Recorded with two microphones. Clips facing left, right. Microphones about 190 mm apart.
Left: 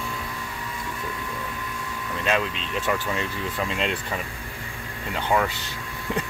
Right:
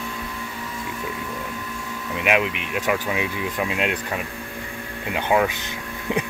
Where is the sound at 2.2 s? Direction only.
15° right (ahead or behind).